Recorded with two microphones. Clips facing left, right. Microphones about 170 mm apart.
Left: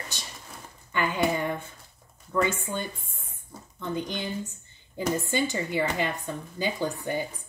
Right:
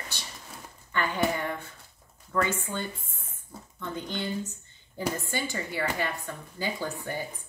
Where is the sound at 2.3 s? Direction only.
15° left (ahead or behind).